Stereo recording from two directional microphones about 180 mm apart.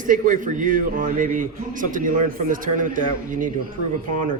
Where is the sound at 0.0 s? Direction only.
45° right (ahead or behind).